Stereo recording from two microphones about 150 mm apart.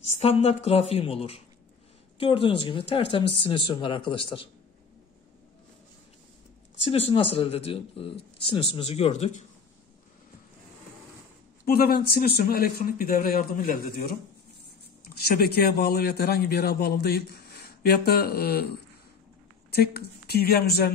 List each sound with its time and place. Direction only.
0.2 s speech: 45° left (ahead or behind)
6.8 s speech: 35° left (ahead or behind)
11.6 s speech: 90° left; by 14.1 s 70° left (ahead or behind)
15.1 s a man's voice: 90° left
19.7 s a man's voice: 90° left